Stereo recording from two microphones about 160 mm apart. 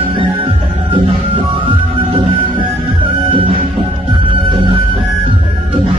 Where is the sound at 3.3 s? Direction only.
35° right (ahead or behind).